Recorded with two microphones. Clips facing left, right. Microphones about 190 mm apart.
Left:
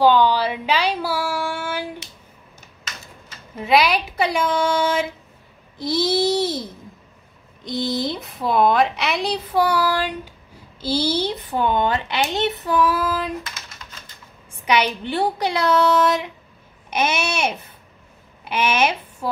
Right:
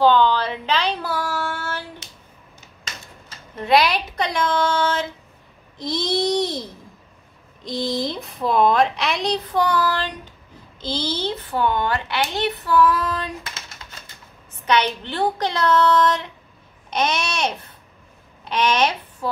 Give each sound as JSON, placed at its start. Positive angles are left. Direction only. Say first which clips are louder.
{"t": 0.0, "sound": "a sound", "louder": "left 1 dB", "side_deg": 10}
{"t": 3.5, "sound": "a child's voice", "louder": "even", "side_deg": 0}
{"t": 5.8, "sound": "babbling", "louder": "left 3 dB", "side_deg": 5}
{"t": 7.6, "sound": "a woman's voice", "louder": "left 1 dB", "side_deg": 0}
{"t": 14.5, "sound": "a child's voice", "louder": "even", "side_deg": 10}